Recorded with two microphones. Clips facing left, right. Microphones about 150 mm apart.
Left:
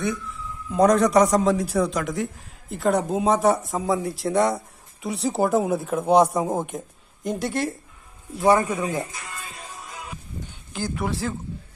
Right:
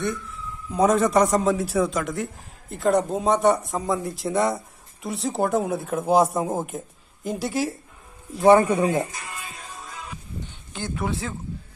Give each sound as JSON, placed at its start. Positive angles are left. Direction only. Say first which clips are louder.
{"t": 0.7, "sound": "a man's voice", "louder": "left 2 dB", "side_deg": 0}
{"t": 8.4, "sound": "a man's voice", "louder": "right 4 dB", "side_deg": -25}
{"t": 10.7, "sound": "a man's voice", "louder": "left 1 dB", "side_deg": 0}